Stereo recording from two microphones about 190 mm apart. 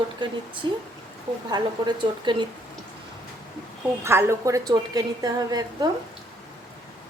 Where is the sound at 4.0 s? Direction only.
15° right (ahead or behind).